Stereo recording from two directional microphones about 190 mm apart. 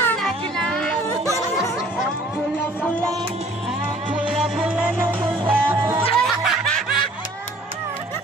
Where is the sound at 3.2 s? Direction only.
30° right (ahead or behind).